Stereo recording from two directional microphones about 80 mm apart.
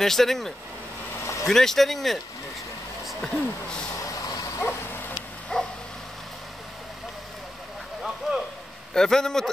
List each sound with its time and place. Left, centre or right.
0.0 s speech: centre
1.1 s vehicle: left
1.5 s speech: centre
4.0 s vehicle: left
5.5 s bow-wow: centre
8.3 s a sound: centre
8.9 s a man's voice: centre